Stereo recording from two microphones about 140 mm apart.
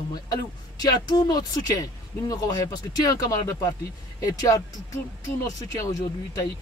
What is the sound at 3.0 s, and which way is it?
Speech, 25° left (ahead or behind).